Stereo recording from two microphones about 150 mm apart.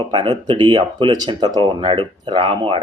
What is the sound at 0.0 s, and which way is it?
Speech, 30° right (ahead or behind).